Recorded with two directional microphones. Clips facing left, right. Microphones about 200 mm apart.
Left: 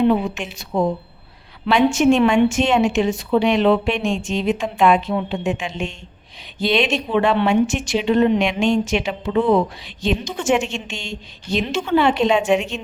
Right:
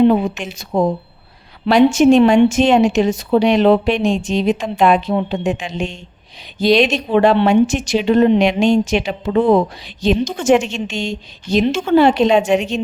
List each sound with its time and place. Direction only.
0.1 s a woman's voice: 45° right (ahead or behind)